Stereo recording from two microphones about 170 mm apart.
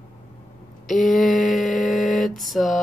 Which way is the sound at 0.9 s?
Centre (ahead or behind).